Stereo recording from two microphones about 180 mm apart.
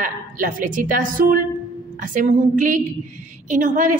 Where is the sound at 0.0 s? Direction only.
50° right (ahead or behind).